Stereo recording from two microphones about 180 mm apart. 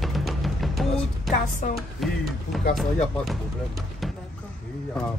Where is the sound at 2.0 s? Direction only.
Centre (ahead or behind).